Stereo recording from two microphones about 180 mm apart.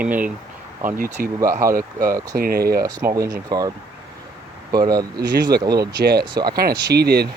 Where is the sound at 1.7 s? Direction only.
50° right (ahead or behind).